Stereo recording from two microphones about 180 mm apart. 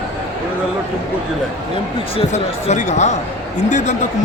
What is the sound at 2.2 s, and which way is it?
Speech, 40° left (ahead or behind).